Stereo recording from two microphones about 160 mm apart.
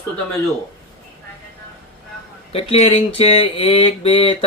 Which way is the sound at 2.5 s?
40° left (ahead or behind).